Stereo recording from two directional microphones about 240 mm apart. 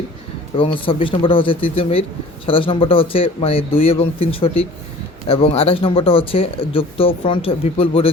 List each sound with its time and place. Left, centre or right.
0.5 s speech: left